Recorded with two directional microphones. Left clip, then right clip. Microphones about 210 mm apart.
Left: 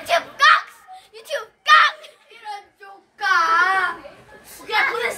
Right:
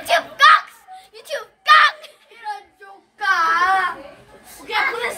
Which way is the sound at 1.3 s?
10° right (ahead or behind).